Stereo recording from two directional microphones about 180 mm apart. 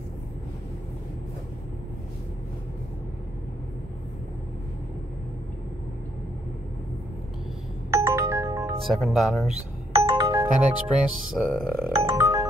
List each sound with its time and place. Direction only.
7.9 s ringtone: 15° right (ahead or behind)
8.8 s speech: centre (ahead or behind)
9.9 s music: 35° right (ahead or behind)
10.4 s speech: 5° right (ahead or behind)
11.8 s music: 15° right (ahead or behind)